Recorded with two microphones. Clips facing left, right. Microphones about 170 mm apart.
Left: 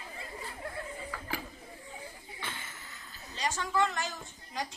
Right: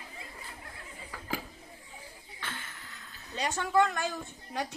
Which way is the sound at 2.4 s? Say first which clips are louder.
Right 1 dB; 10° left (ahead or behind).